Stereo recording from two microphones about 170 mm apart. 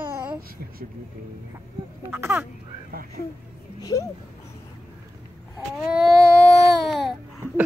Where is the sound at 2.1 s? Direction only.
15° right (ahead or behind).